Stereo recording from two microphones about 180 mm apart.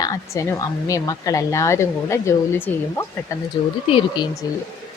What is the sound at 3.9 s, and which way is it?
Speech, 30° left (ahead or behind).